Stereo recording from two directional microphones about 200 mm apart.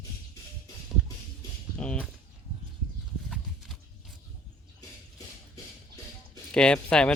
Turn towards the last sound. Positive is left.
turn(degrees=5)  # may be behind; listen again after turning